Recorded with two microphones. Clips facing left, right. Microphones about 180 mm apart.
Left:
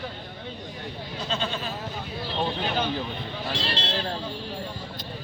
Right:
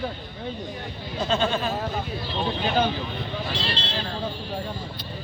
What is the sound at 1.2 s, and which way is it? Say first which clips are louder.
Speech: right 7 dB; 50° right (ahead or behind).